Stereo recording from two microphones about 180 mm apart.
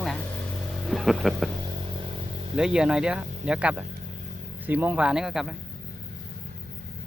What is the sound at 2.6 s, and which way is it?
Speech, 5° right (ahead or behind).